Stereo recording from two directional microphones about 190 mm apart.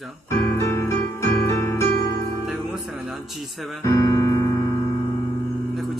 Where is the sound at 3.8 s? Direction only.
15° left (ahead or behind).